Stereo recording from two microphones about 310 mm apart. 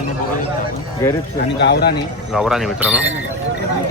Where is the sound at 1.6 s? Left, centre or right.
Left.